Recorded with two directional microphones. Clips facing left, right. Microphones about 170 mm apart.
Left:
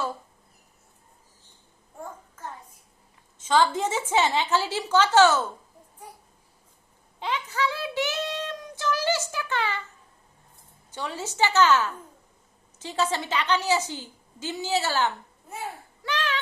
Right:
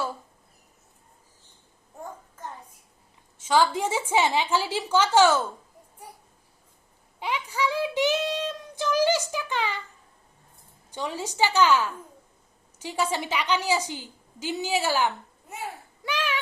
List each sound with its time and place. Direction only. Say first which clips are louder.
3.4 s a woman's voice: even; 10° right (ahead or behind)
7.2 s child singing: even; 15° right (ahead or behind)
10.9 s a woman's voice: right 1 dB; 15° right (ahead or behind)
16.0 s a sound: even; 10° right (ahead or behind)